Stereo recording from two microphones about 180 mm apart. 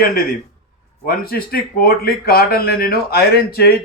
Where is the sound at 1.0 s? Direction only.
55° left (ahead or behind).